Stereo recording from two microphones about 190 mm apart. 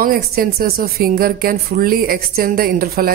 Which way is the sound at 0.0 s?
50° right (ahead or behind).